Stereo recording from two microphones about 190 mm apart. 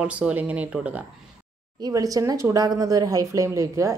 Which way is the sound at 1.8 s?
20° right (ahead or behind).